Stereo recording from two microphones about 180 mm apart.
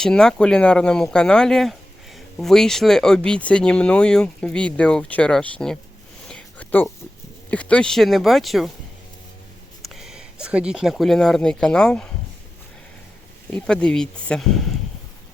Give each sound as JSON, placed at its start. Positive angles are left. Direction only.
{"t": 0.0, "sound": "speech", "side_deg": 5}
{"t": 6.2, "sound": "a sound", "side_deg": 5}
{"t": 7.5, "sound": "speech", "side_deg": 5}
{"t": 9.8, "sound": "speech", "side_deg": 0}
{"t": 13.5, "sound": "speech", "side_deg": 5}